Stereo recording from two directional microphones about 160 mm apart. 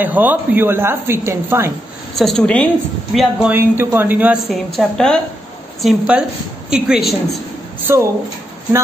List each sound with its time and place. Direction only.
0.0 s speech: 10° right (ahead or behind)
2.1 s a woman's voice: 5° left (ahead or behind)
3.2 s speech: 10° right (ahead or behind)
4.7 s a woman's voice: 5° left (ahead or behind)
7.8 s speech: 15° right (ahead or behind)